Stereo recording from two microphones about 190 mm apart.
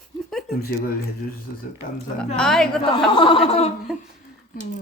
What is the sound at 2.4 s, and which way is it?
Speech, 5° left (ahead or behind).